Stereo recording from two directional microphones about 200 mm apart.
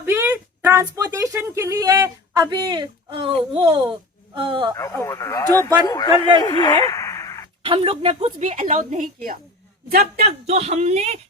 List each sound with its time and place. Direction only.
0.0 s speech: 10° right (ahead or behind)
4.8 s a man's voice: 15° left (ahead or behind)
7.6 s a woman's voice: 25° right (ahead or behind); by 10.2 s 50° right (ahead or behind)
10.2 s a woman's voice: 30° right (ahead or behind)